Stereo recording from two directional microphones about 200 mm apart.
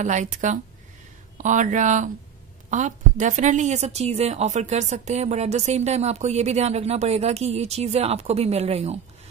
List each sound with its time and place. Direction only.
0.0 s a woman's voice: 40° right (ahead or behind)